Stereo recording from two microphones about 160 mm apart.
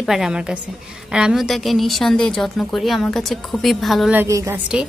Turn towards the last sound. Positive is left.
turn(degrees=-20)  # may be behind; listen again after turning